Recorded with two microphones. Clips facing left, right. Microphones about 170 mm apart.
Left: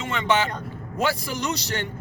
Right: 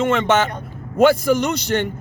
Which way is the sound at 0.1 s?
50° right (ahead or behind).